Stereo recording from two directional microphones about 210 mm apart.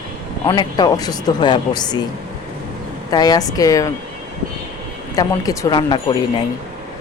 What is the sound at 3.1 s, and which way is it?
Speech, 20° left (ahead or behind).